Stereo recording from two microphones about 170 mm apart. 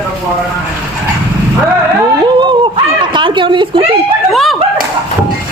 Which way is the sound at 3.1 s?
30° right (ahead or behind).